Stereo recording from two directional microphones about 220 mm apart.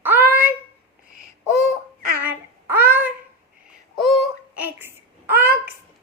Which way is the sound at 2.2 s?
10° right (ahead or behind).